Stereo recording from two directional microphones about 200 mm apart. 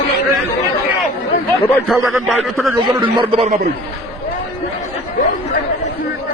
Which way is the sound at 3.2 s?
35° right (ahead or behind).